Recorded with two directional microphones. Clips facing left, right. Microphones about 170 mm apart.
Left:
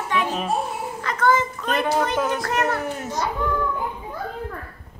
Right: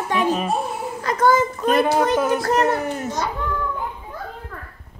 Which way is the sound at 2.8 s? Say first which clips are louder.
Right 3 dB; centre (ahead or behind).